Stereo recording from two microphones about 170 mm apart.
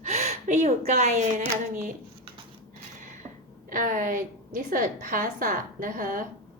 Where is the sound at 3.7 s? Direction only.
50° right (ahead or behind).